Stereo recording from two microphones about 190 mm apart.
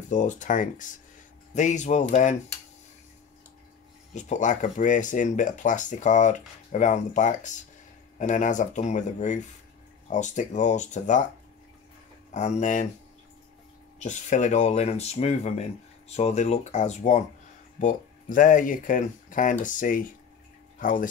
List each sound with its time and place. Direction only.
0.1 s speech: 40° left (ahead or behind)
4.1 s speech: 40° left (ahead or behind)
12.3 s speech: 40° left (ahead or behind)
13.9 s speech: 40° left (ahead or behind)